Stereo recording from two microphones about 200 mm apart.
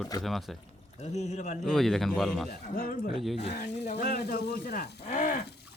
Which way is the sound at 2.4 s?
40° left (ahead or behind).